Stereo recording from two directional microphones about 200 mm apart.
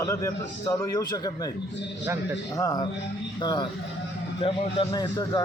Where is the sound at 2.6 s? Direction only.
20° left (ahead or behind).